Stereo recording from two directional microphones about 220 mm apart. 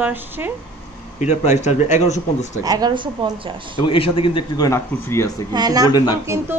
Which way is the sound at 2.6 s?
20° right (ahead or behind).